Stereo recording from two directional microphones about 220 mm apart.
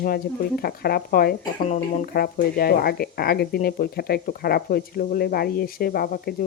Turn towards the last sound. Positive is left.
turn(degrees=40)  # may be behind; listen again after turning